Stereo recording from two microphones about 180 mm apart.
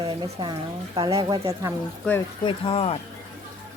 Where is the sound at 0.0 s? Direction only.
25° right (ahead or behind).